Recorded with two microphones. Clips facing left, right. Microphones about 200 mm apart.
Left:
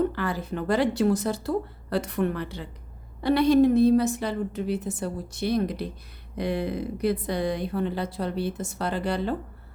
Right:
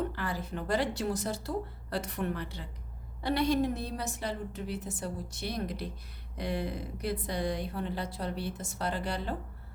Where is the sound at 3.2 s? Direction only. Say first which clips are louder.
Left 9 dB; 80° left.